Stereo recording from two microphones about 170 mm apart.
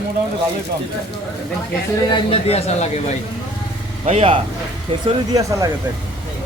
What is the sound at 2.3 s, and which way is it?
Speech, 35° left (ahead or behind).